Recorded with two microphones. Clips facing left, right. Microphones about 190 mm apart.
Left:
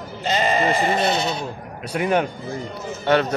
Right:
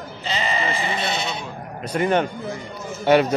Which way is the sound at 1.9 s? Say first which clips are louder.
Even; 5° left (ahead or behind).